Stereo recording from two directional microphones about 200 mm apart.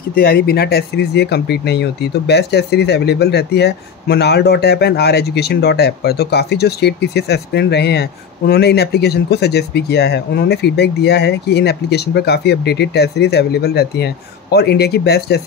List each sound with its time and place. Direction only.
0.1 s speech: 50° left (ahead or behind)